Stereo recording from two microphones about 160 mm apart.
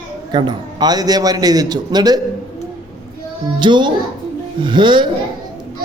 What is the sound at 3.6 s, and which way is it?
A man's voice, 30° right (ahead or behind).